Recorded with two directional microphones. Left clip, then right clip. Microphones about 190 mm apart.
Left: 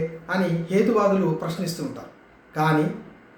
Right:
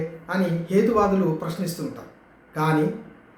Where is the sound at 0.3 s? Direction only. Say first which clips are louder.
Even; 5° left (ahead or behind).